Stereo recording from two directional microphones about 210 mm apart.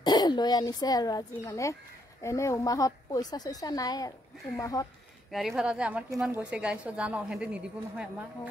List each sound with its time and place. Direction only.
0.0 s a woman's voice: 20° left (ahead or behind)
5.6 s a woman's voice: 5° right (ahead or behind)